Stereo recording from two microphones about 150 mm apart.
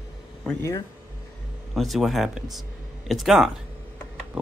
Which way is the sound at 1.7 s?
Centre (ahead or behind).